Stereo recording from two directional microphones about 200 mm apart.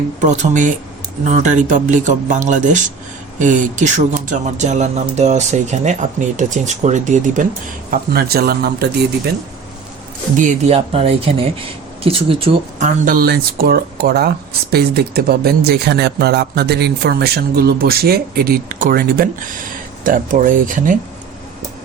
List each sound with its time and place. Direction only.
0.2 s speech: 40° right (ahead or behind)
7.9 s speech: 50° right (ahead or behind)
10.3 s speech: 40° right (ahead or behind)
10.8 s speech: 30° right (ahead or behind)
13.1 s speech: 50° right (ahead or behind)